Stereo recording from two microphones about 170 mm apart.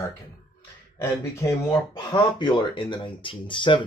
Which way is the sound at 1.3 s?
15° left (ahead or behind).